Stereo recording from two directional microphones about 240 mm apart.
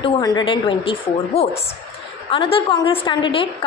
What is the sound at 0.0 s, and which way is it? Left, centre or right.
A woman's voice, centre.